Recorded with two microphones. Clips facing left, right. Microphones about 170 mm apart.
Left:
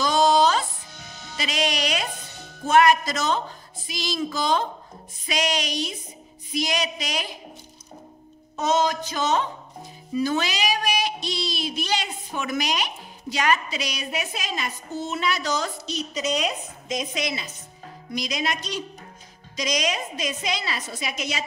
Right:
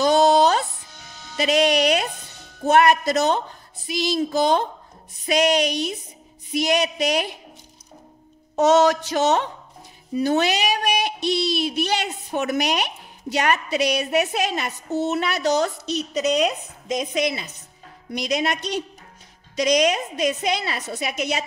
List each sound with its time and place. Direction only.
0.0 s music: 60° right (ahead or behind)
1.3 s speech: 55° right (ahead or behind)
8.5 s a sound: 75° right (ahead or behind)
10.1 s a woman's voice: 60° right (ahead or behind)